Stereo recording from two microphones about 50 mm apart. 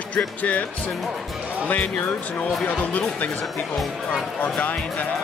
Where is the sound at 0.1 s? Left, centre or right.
Left.